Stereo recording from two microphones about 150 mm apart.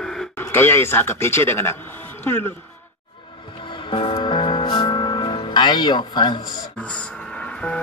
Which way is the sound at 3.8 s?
35° left (ahead or behind).